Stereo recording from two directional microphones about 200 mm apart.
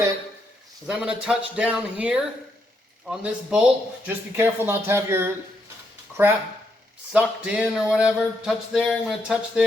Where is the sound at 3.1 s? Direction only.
5° right (ahead or behind).